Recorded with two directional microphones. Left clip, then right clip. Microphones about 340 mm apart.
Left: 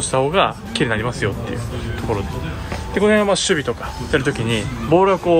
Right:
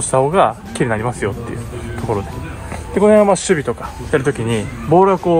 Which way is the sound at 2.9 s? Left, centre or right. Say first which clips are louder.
Right 5 dB; centre.